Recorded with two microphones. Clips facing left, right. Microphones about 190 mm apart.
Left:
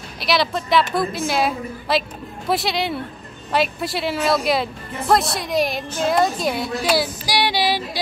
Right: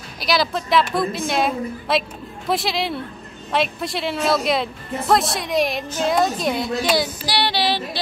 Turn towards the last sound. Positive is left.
turn(degrees=10)  # may be behind; listen again after turning